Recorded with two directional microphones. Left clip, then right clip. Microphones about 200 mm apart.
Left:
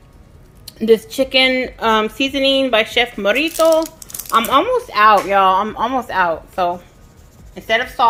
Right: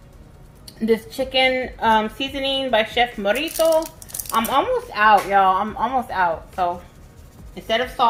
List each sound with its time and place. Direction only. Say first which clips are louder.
0.6 s a woman's voice: left 7 dB; 55° left (ahead or behind)